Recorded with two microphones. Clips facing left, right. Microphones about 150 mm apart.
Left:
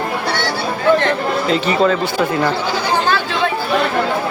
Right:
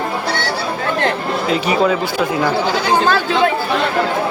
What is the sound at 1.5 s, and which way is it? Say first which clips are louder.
Speech: even; 5° right (ahead or behind).